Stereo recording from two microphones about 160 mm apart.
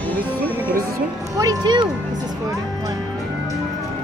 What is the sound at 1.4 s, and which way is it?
Speech, 25° right (ahead or behind).